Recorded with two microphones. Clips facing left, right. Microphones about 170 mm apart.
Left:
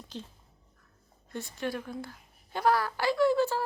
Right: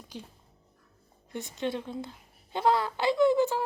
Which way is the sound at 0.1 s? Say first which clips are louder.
Left 1 dB; 10° right (ahead or behind).